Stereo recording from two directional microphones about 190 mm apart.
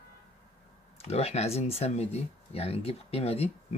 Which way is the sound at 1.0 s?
35° left (ahead or behind).